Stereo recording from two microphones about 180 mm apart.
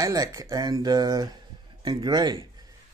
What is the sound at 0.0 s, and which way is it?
Speech, 20° right (ahead or behind).